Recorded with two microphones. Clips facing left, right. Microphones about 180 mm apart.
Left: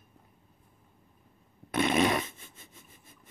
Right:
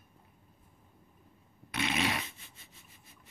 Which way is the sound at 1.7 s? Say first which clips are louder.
Left 7 dB; 50° left (ahead or behind).